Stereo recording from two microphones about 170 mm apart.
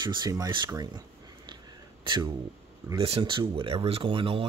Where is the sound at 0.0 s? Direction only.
25° right (ahead or behind).